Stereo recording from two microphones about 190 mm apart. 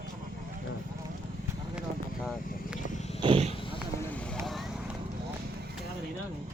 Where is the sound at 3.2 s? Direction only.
30° right (ahead or behind).